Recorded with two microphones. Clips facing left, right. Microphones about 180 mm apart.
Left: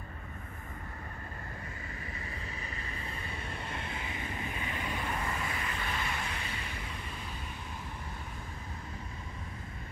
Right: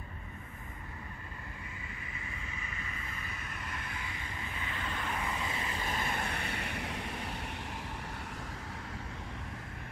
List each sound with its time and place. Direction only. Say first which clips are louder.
2.6 s vehicle: left 2 dB; 35° left (ahead or behind); by 5.1 s 15° left (ahead or behind)
5.4 s vehicle: even; 25° right (ahead or behind)
5.9 s vehicle: right 1 dB; 45° right (ahead or behind); by 7.3 s 70° right (ahead or behind)